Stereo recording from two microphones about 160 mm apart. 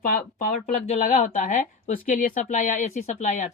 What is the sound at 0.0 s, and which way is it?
Speech, 60° left (ahead or behind).